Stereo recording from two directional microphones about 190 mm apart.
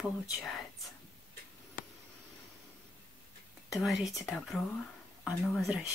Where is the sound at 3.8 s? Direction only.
Centre (ahead or behind).